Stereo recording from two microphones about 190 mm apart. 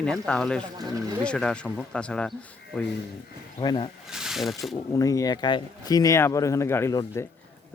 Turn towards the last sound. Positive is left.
turn(degrees=15)  # may be behind; listen again after turning